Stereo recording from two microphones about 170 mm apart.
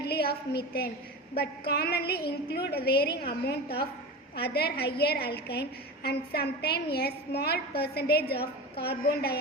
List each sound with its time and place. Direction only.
0.0 s a woman's voice: 70° left (ahead or behind)